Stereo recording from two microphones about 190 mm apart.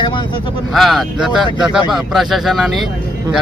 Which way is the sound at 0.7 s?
Centre (ahead or behind).